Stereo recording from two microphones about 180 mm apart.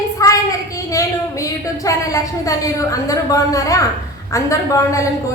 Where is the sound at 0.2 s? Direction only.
20° left (ahead or behind).